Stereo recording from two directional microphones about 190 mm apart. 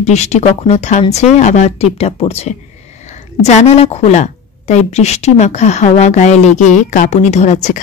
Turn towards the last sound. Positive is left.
turn(degrees=40)  # may be behind; listen again after turning